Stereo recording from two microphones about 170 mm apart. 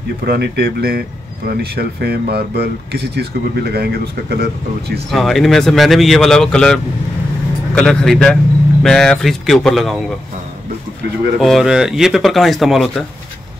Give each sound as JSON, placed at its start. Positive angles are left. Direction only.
{"t": 0.2, "sound": "speech", "side_deg": -70}
{"t": 5.1, "sound": "speech", "side_deg": 0}
{"t": 11.3, "sound": "speech", "side_deg": 0}